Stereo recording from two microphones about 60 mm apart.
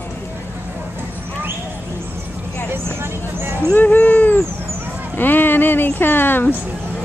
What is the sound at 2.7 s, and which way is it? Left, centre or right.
Vehicle, right.